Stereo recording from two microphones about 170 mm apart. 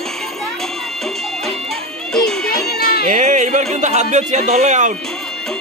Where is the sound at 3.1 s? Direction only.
45° right (ahead or behind).